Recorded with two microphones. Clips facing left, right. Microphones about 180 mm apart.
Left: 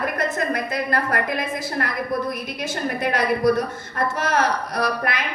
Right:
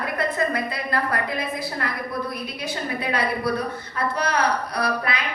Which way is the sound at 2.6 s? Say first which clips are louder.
Left 4 dB; 45° left (ahead or behind).